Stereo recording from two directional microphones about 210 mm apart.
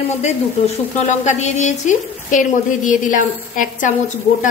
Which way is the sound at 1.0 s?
35° left (ahead or behind).